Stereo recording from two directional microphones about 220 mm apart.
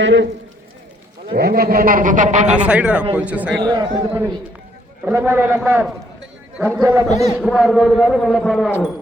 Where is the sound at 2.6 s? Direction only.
5° right (ahead or behind).